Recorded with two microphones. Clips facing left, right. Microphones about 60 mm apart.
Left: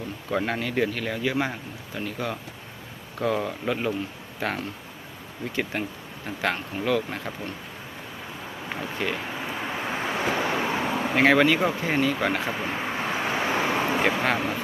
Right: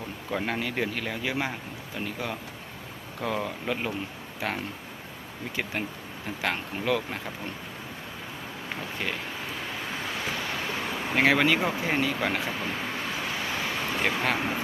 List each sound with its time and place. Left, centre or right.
0.3 s speech: centre
5.7 s speech: centre
9.0 s speech: centre
9.4 s vehicle: left
10.8 s speech: centre
12.5 s vehicle: centre
14.0 s speech: centre